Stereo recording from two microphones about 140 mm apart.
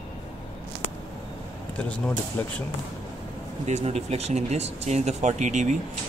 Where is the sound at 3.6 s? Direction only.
50° right (ahead or behind).